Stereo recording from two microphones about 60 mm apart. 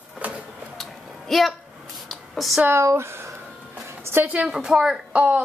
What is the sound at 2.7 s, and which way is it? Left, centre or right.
Speech, right.